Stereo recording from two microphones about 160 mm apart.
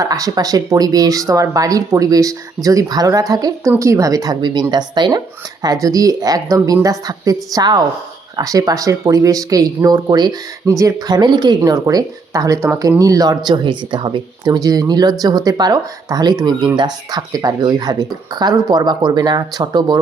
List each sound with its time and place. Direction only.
0.0 s speech: 20° right (ahead or behind)